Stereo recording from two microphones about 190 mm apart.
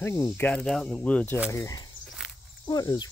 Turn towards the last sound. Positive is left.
turn(degrees=20)  # may be behind; listen again after turning